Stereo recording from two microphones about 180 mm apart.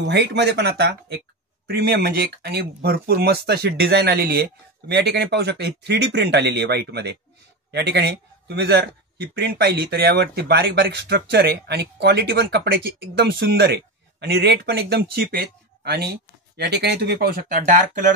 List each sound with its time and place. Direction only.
0.0 s a man's voice: 75° right (ahead or behind); by 18.1 s 45° right (ahead or behind)